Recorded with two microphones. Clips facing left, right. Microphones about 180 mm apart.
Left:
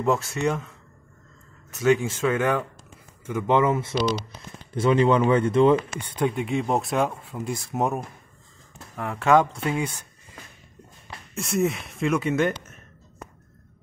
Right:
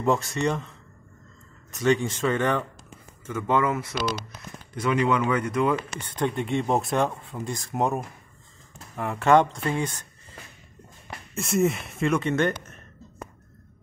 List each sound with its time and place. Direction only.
0.0 s speech: 5° left (ahead or behind)
1.7 s speech: 5° left (ahead or behind)
3.3 s speech: 15° left (ahead or behind)
5.9 s speech: 10° left (ahead or behind)
11.3 s speech: centre (ahead or behind)